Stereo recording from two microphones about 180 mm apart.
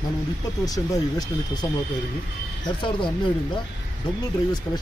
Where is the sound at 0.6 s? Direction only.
20° left (ahead or behind).